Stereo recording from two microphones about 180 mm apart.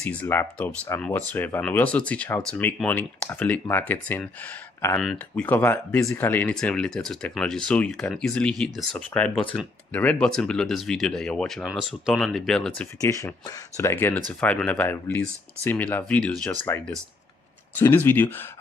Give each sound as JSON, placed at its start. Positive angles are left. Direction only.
{"t": 0.0, "sound": "speech", "side_deg": 10}
{"t": 13.0, "sound": "speech", "side_deg": 20}